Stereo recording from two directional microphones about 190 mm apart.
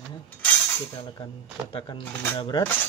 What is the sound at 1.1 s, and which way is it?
Speech, 25° left (ahead or behind).